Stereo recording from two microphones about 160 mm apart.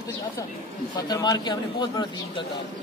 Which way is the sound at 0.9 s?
25° left (ahead or behind).